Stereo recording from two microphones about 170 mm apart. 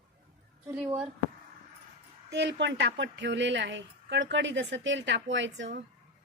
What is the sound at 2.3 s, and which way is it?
Speech, 90° right.